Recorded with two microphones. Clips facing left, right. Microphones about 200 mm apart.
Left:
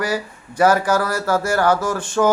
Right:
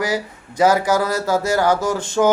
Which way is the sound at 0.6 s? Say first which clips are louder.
Even; 20° right (ahead or behind).